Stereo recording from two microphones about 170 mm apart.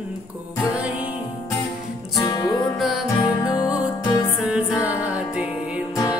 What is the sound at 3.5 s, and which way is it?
Music, 20° left (ahead or behind).